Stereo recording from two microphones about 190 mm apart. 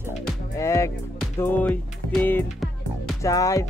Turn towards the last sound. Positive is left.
turn(degrees=15)  # may be behind; listen again after turning